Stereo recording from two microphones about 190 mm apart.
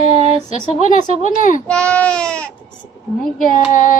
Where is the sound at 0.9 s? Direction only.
40° left (ahead or behind).